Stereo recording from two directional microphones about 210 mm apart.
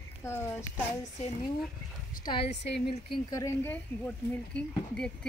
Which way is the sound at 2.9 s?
20° left (ahead or behind).